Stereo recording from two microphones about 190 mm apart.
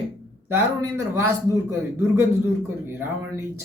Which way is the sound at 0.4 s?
15° right (ahead or behind).